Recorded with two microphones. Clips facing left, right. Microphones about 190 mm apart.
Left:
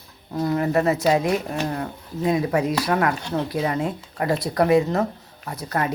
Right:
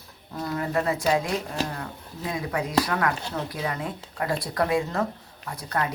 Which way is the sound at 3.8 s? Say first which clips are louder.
Left 5 dB; 25° left (ahead or behind).